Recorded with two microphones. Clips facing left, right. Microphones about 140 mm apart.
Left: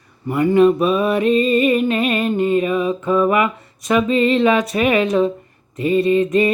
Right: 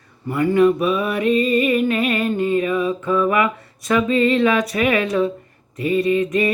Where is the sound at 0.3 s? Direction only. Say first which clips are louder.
Left 2 dB; 20° left (ahead or behind).